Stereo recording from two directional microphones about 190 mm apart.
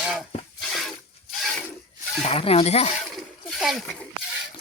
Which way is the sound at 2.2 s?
30° left (ahead or behind).